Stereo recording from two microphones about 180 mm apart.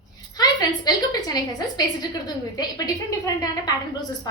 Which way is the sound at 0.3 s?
20° left (ahead or behind).